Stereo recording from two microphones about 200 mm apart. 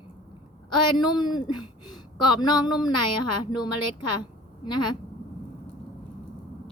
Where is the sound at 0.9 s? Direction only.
20° left (ahead or behind).